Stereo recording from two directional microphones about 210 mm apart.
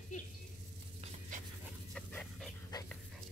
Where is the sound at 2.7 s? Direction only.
20° left (ahead or behind).